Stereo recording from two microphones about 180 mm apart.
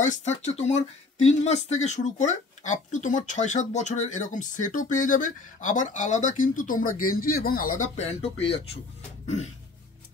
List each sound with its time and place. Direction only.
0.0 s speech: 40° left (ahead or behind)
9.2 s throat clearing: 35° left (ahead or behind)